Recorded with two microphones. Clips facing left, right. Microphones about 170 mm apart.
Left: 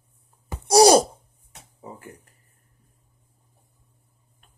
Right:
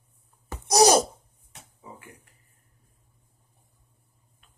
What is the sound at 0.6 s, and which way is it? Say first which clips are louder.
Wail: left 5 dB; 30° left (ahead or behind).